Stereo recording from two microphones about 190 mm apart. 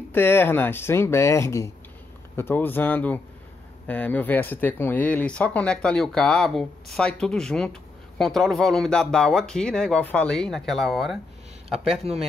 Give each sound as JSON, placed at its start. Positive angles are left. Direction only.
{"t": 0.1, "sound": "speech", "side_deg": 10}
{"t": 12.1, "sound": "speech", "side_deg": -30}